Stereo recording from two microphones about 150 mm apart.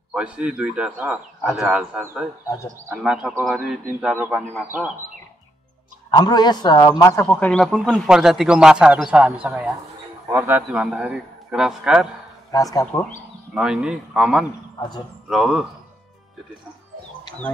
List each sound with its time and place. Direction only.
0.1 s speech: 5° right (ahead or behind)
6.0 s speech: 30° left (ahead or behind); by 10.6 s 20° right (ahead or behind)
10.7 s speech: 5° right (ahead or behind)
12.4 s speech: 25° left (ahead or behind)
13.6 s speech: 5° right (ahead or behind)